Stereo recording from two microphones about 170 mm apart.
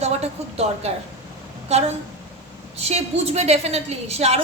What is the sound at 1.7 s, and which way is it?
A woman's voice, 40° right (ahead or behind).